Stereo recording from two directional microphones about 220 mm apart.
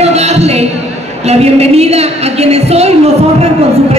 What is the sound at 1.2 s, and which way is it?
A woman's voice, 30° right (ahead or behind).